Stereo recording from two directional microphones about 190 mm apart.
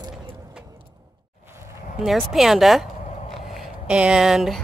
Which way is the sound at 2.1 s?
Centre (ahead or behind).